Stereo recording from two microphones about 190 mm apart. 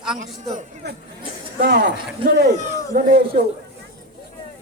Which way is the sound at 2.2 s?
25° right (ahead or behind).